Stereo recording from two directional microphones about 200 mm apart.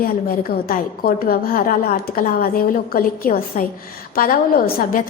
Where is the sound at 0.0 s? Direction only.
50° left (ahead or behind).